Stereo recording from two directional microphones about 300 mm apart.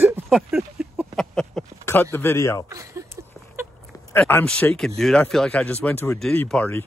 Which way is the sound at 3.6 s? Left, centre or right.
Centre.